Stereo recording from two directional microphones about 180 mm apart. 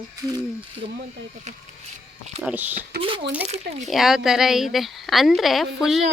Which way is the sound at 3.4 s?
40° right (ahead or behind).